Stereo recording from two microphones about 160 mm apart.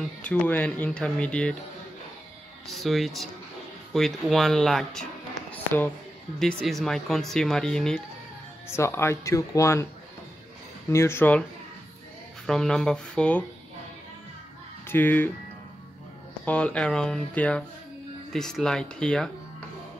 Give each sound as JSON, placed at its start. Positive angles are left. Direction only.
{"t": 0.2, "sound": "speech", "side_deg": 10}
{"t": 2.7, "sound": "speech", "side_deg": 0}
{"t": 6.4, "sound": "speech", "side_deg": 0}
{"t": 8.6, "sound": "speech", "side_deg": 15}
{"t": 10.9, "sound": "speech", "side_deg": 15}
{"t": 12.4, "sound": "speech", "side_deg": 5}
{"t": 14.9, "sound": "speech", "side_deg": 10}
{"t": 16.4, "sound": "speech", "side_deg": 5}